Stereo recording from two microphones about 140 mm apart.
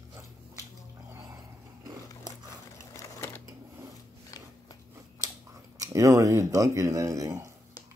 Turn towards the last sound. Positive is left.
turn(degrees=-25)  # may be behind; listen again after turning